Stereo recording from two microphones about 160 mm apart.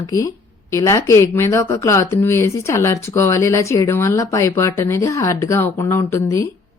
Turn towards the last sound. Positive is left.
turn(degrees=20)  # may be behind; listen again after turning